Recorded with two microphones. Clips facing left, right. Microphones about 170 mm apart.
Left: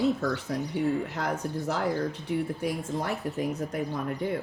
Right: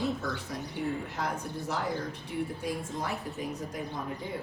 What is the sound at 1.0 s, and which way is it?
A woman's voice, 65° left (ahead or behind).